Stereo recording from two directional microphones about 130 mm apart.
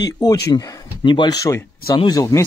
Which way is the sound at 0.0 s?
30° left (ahead or behind).